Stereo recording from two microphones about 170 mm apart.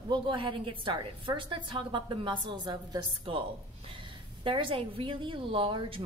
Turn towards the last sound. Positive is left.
turn(degrees=-30)  # may be behind; listen again after turning